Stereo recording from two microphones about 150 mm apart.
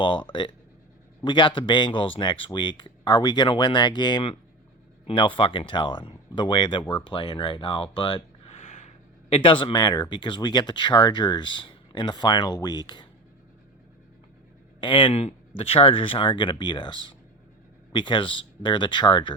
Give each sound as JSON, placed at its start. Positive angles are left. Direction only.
{"t": 0.0, "sound": "speech", "side_deg": 35}
{"t": 9.3, "sound": "speech", "side_deg": 35}
{"t": 14.8, "sound": "speech", "side_deg": 35}